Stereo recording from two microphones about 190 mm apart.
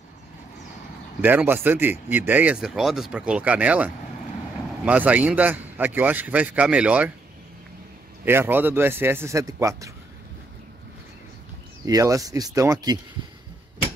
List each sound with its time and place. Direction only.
1.2 s speech: 10° right (ahead or behind)
8.3 s speech: 10° right (ahead or behind)
11.8 s speech: 20° right (ahead or behind)